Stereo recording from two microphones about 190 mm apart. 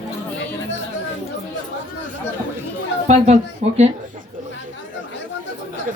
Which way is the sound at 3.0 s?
35° right (ahead or behind).